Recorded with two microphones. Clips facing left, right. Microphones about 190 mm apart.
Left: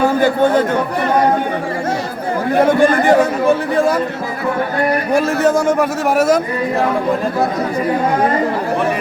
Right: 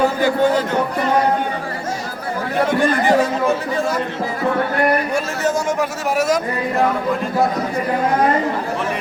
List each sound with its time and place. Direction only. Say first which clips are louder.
0.2 s a man's voice: left 3 dB; 55° left (ahead or behind)
2.6 s speech: left 5 dB; 55° left (ahead or behind)
5.1 s a man's voice: left 6 dB; 55° left (ahead or behind)